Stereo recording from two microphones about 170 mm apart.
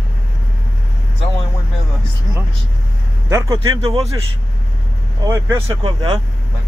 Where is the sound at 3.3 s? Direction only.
20° right (ahead or behind).